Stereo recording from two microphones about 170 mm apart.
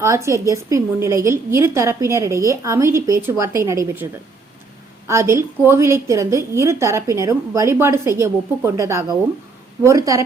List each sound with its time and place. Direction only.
0.0 s a woman's voice: 15° right (ahead or behind)